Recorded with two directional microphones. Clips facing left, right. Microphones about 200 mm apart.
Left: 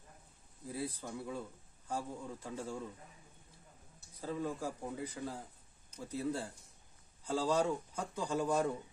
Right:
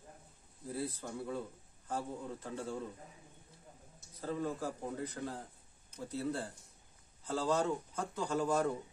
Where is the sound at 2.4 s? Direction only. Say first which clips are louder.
Left 1 dB; 10° left (ahead or behind).